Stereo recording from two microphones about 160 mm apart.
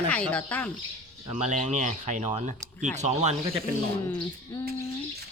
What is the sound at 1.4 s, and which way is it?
Speech, 50° right (ahead or behind).